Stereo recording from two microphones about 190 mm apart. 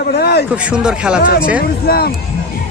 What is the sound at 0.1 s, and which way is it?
Speech, 55° left (ahead or behind).